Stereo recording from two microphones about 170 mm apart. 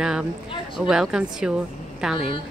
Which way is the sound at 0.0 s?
5° right (ahead or behind).